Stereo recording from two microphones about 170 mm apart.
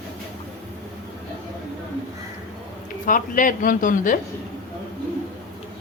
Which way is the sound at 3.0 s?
50° left (ahead or behind).